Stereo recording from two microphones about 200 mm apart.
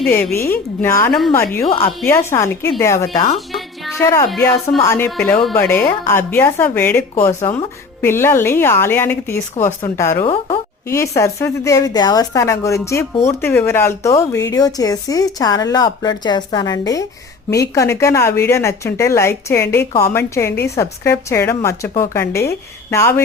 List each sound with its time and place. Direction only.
0.0 s a woman's voice: 5° left (ahead or behind)
1.6 s speech: 25° left (ahead or behind)
2.0 s a woman's voice: 15° left (ahead or behind)
8.0 s a woman's voice: 10° left (ahead or behind)
10.2 s speech: 30° left (ahead or behind)
10.8 s a woman's voice: 15° left (ahead or behind)